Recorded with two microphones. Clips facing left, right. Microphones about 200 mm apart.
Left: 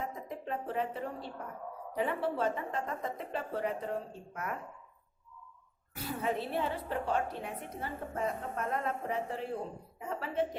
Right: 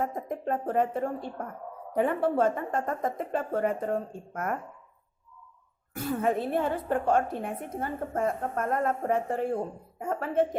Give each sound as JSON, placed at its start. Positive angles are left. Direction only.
{"t": 0.0, "sound": "a woman's voice", "side_deg": -50}
{"t": 5.9, "sound": "a woman's voice", "side_deg": -50}